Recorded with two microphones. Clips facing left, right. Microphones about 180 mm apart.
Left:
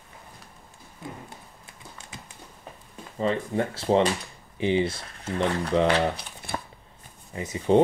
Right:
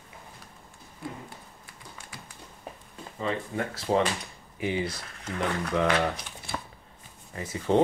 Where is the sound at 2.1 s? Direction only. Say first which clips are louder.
Left 3 dB; 20° left (ahead or behind).